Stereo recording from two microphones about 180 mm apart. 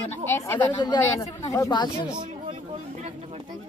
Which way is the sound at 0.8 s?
20° left (ahead or behind).